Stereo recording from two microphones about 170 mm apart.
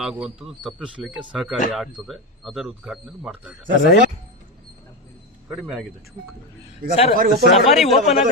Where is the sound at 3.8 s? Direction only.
75° left (ahead or behind).